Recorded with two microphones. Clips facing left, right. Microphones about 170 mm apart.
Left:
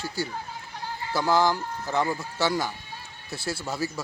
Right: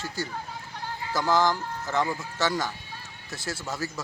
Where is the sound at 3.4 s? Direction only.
20° right (ahead or behind).